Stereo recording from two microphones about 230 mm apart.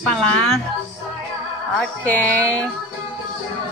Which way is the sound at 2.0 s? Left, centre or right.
Centre.